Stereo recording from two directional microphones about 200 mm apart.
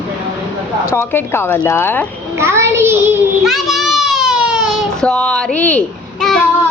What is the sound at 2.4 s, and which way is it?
Child singing, 15° right (ahead or behind).